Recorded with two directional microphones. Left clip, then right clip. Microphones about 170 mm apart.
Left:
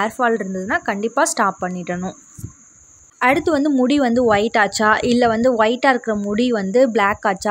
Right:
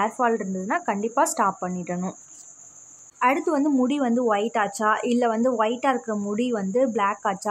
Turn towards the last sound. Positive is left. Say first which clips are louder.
# left 6 dB
turn(degrees=25)  # may be behind; listen again after turning